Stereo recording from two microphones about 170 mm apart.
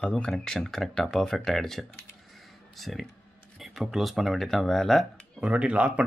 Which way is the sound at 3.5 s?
Centre (ahead or behind).